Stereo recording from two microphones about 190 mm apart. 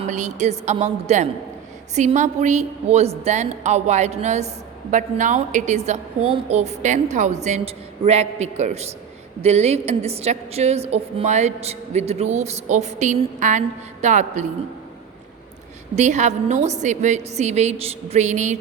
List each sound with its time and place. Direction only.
0.1 s a woman's voice: 40° right (ahead or behind)
16.0 s a woman's voice: 40° right (ahead or behind)